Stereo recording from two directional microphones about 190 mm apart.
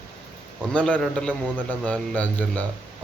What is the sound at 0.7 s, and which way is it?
A man's voice, 5° left (ahead or behind).